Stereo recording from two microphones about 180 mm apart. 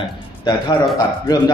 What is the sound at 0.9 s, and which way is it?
Speech, 20° left (ahead or behind).